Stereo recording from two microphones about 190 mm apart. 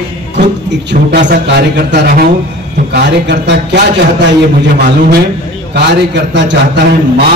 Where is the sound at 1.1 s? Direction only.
60° right (ahead or behind).